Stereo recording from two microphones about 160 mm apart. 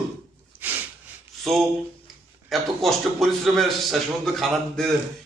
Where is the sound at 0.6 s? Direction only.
10° right (ahead or behind).